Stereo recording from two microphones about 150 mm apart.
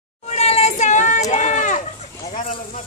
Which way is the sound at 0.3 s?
45° left (ahead or behind).